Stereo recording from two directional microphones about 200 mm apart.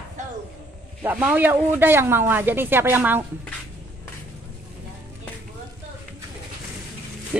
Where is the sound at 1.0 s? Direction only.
10° right (ahead or behind).